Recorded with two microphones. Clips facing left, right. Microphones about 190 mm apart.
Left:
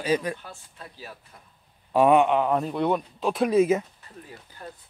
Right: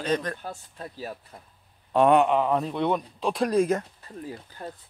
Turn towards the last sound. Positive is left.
turn(degrees=-35)  # may be behind; listen again after turning